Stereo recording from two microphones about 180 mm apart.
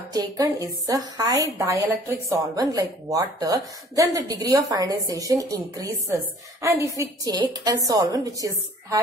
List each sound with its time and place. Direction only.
0.1 s a woman's voice: 20° right (ahead or behind)